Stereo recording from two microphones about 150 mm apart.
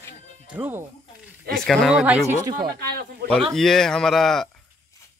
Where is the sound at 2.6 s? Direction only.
90° right.